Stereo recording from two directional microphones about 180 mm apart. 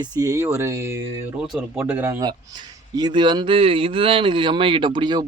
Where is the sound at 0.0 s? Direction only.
20° right (ahead or behind).